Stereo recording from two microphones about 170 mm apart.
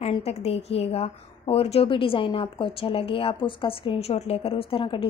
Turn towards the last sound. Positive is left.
turn(degrees=30)  # may be behind; listen again after turning